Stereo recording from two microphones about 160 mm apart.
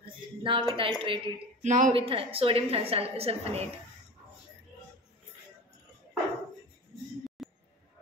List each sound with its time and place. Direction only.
0.4 s a woman's voice: 30° right (ahead or behind)
1.6 s a woman's voice: 50° right (ahead or behind)
2.0 s a woman's voice: 35° right (ahead or behind)
7.4 s music: centre (ahead or behind)